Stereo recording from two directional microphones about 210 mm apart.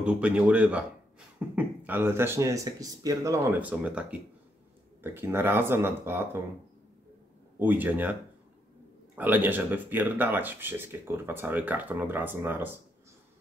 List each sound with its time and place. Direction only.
0.0 s speech: 5° right (ahead or behind)
7.5 s speech: 10° right (ahead or behind)